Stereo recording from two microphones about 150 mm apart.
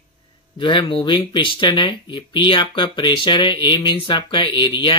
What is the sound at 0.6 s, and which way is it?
Speech, 35° left (ahead or behind).